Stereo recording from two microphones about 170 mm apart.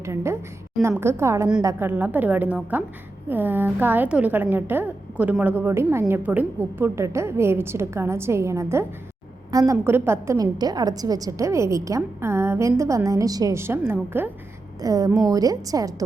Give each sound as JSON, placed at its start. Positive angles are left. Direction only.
{"t": 0.0, "sound": "a woman's voice", "side_deg": -15}